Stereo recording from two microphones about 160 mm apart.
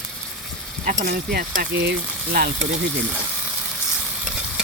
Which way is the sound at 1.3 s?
70° right (ahead or behind).